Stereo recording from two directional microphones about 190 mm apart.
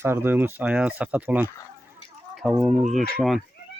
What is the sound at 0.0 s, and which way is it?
Speech, 10° right (ahead or behind).